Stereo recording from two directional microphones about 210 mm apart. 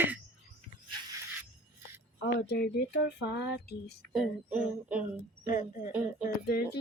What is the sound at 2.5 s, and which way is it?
Speech, 50° left (ahead or behind).